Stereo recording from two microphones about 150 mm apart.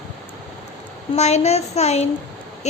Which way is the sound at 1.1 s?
45° left (ahead or behind).